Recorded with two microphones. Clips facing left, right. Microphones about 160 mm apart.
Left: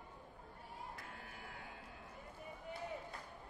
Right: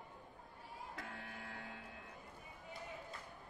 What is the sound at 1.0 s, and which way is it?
Buzzer, 85° right.